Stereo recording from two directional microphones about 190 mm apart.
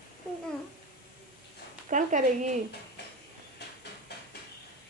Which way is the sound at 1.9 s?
40° right (ahead or behind).